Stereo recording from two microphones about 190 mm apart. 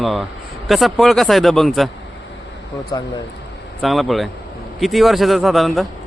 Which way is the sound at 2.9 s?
20° left (ahead or behind).